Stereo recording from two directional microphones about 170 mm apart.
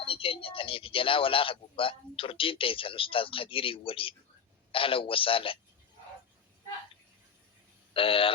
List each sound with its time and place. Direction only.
0.0 s a man's voice: 30° left (ahead or behind)
7.9 s a man's voice: 30° left (ahead or behind)